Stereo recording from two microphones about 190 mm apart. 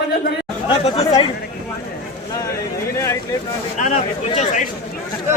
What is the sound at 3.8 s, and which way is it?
Speech, 40° left (ahead or behind).